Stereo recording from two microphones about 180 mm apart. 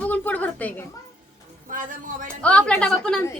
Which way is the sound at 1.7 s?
50° right (ahead or behind).